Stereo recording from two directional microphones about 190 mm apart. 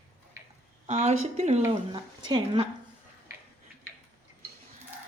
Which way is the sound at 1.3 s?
35° right (ahead or behind).